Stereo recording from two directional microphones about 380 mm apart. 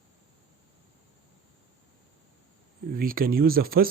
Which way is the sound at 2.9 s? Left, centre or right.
Right.